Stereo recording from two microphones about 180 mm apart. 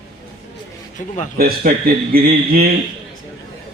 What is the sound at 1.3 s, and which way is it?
A man's voice, 55° right (ahead or behind).